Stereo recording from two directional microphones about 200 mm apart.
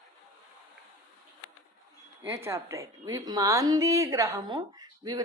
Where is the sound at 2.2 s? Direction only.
15° right (ahead or behind).